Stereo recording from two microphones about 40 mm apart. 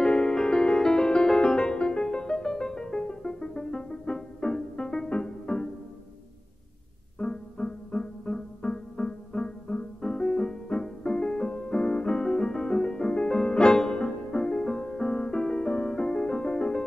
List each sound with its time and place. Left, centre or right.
0.0 s music: left
7.2 s music: left